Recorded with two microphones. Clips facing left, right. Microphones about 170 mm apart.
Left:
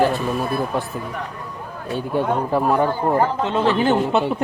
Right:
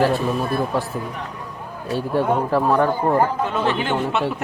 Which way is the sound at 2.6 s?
10° left (ahead or behind).